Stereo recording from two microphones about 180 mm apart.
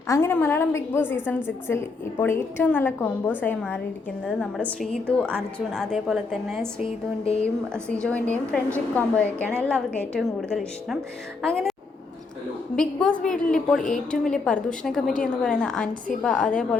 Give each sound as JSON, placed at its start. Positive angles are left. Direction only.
{"t": 0.1, "sound": "a woman's voice", "side_deg": 15}
{"t": 6.7, "sound": "a woman's voice", "side_deg": 35}
{"t": 7.4, "sound": "a woman's voice", "side_deg": 5}
{"t": 12.7, "sound": "a woman's voice", "side_deg": 5}